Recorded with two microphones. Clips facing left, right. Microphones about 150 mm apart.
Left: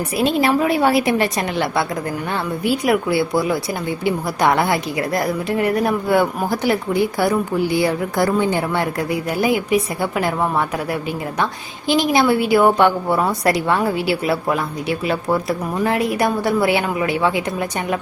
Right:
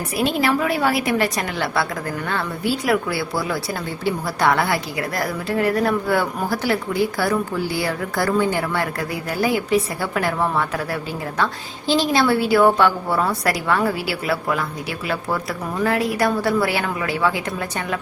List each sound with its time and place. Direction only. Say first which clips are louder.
0.2 s a woman's voice: left 3 dB; 25° left (ahead or behind)
11.9 s a woman's voice: left 2 dB; 15° left (ahead or behind)